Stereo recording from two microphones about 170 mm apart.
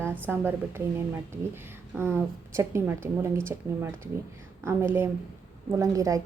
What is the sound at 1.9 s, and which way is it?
A woman's voice, 10° right (ahead or behind).